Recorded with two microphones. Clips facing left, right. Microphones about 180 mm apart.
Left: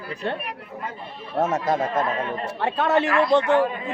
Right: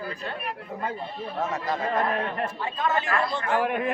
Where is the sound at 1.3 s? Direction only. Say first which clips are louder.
Left 7 dB; 45° left (ahead or behind).